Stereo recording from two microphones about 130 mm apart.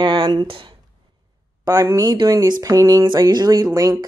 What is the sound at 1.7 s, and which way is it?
Speech, 25° right (ahead or behind).